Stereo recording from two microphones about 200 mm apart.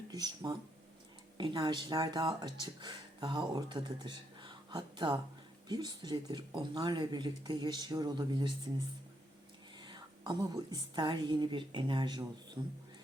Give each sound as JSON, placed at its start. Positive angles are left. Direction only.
{"t": 0.1, "sound": "speech", "side_deg": -20}
{"t": 9.7, "sound": "a woman's voice", "side_deg": -20}